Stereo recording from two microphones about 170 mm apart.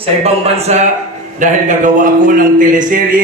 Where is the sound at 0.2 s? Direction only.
40° right (ahead or behind).